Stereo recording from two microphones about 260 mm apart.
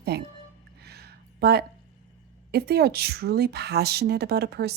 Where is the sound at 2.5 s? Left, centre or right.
Right.